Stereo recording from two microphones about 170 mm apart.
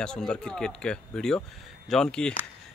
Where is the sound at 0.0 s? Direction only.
5° left (ahead or behind).